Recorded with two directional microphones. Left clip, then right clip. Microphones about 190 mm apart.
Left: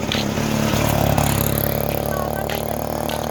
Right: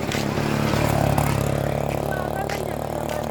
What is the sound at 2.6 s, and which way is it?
Music, 40° left (ahead or behind).